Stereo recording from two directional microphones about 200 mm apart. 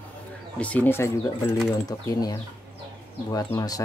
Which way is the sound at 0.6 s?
5° left (ahead or behind).